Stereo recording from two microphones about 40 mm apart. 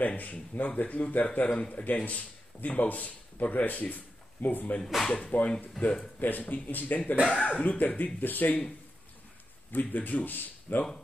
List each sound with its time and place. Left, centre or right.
0.0 s a man's voice: left
9.7 s speech: left